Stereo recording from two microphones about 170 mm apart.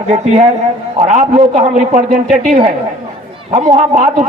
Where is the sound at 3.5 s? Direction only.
45° right (ahead or behind).